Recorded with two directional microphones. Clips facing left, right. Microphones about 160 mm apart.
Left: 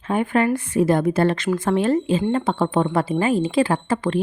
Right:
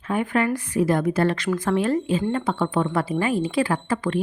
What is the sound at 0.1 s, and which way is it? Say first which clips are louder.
Speech: left 3 dB; 30° left (ahead or behind).